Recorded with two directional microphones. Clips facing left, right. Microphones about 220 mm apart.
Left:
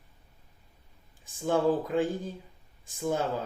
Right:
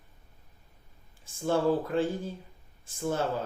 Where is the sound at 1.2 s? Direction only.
15° left (ahead or behind).